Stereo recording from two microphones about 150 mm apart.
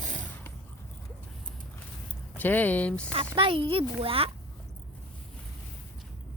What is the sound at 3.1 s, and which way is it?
Speech, 40° right (ahead or behind).